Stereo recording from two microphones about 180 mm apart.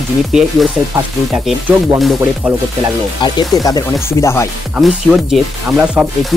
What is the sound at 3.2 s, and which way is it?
Speech, 25° left (ahead or behind).